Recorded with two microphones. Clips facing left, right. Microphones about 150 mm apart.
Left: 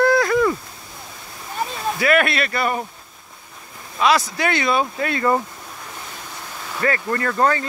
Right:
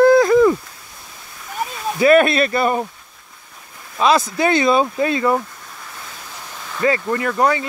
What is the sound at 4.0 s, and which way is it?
Speech, 30° right (ahead or behind).